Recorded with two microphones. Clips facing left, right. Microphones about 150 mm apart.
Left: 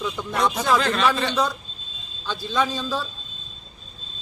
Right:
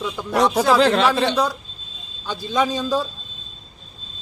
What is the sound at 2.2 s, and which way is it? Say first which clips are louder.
Speech: right 3 dB; 15° right (ahead or behind).